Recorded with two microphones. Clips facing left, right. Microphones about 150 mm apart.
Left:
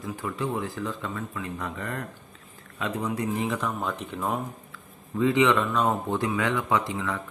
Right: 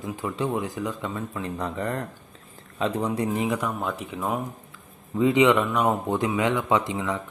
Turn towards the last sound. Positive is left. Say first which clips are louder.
# right 3 dB
turn(degrees=-20)  # may be behind; listen again after turning